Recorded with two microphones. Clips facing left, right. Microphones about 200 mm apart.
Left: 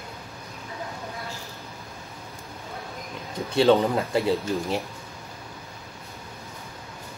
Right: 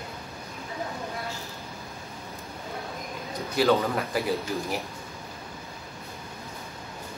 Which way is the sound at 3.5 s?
25° left (ahead or behind).